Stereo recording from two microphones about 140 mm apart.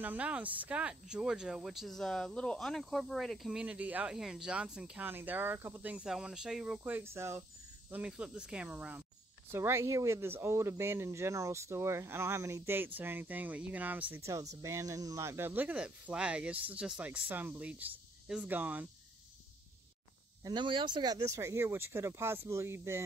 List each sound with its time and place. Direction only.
0.0 s speech: 10° right (ahead or behind)
6.8 s speech: 15° right (ahead or behind)
7.9 s speech: 5° right (ahead or behind)
20.4 s speech: 35° right (ahead or behind)